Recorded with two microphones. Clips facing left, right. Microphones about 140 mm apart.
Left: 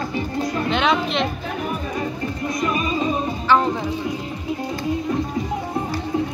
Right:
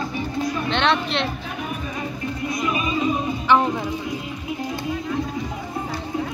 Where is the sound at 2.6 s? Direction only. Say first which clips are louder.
Left 1 dB; 40° left (ahead or behind).